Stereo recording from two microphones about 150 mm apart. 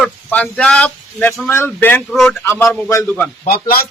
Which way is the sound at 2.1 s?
Centre (ahead or behind).